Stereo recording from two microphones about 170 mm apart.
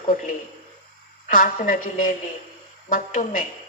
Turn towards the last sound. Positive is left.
turn(degrees=50)  # may be behind; listen again after turning